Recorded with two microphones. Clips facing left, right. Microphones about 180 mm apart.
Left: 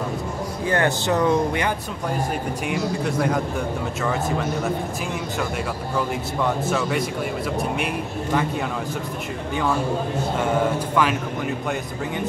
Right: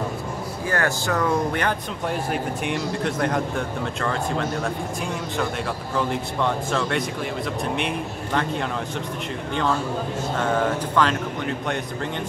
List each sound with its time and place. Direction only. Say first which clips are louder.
0.7 s speech: left 3 dB; 20° left (ahead or behind)
2.6 s speech: left 1 dB; centre (ahead or behind)
5.9 s speech: even; 5° left (ahead or behind)
10.3 s speech: even; 10° left (ahead or behind)